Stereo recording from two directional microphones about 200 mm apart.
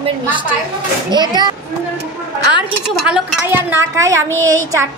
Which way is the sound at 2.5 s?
5° right (ahead or behind).